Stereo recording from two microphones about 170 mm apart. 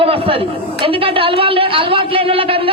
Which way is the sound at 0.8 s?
30° right (ahead or behind).